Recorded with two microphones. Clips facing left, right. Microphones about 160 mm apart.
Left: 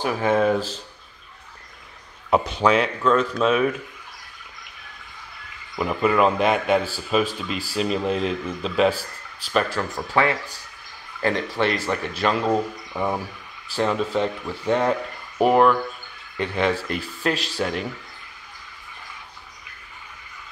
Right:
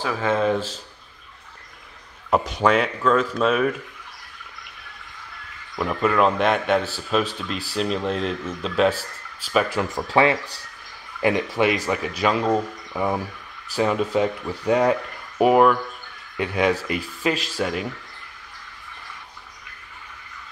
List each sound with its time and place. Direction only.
0.0 s speech: 15° left (ahead or behind)
0.5 s speech: centre (ahead or behind)
2.3 s speech: centre (ahead or behind)
5.8 s speech: 5° left (ahead or behind)
9.8 s speech: 20° right (ahead or behind)
11.1 s speech: 10° right (ahead or behind)